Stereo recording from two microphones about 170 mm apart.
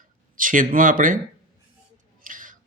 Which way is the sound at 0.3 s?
50° right (ahead or behind).